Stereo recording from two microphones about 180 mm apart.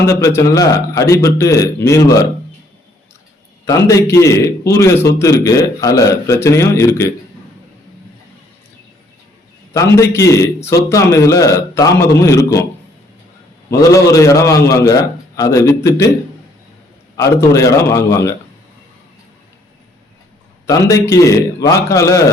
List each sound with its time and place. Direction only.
0.0 s a man's voice: 15° left (ahead or behind)
3.8 s a man's voice: 15° left (ahead or behind)
9.7 s a man's voice: 15° left (ahead or behind)
13.7 s a man's voice: 15° left (ahead or behind)
17.2 s a man's voice: 15° left (ahead or behind)
20.7 s a man's voice: 15° left (ahead or behind)